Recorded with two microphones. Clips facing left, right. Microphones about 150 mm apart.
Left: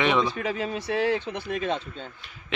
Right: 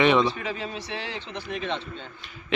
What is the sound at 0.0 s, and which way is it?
Speech, centre (ahead or behind).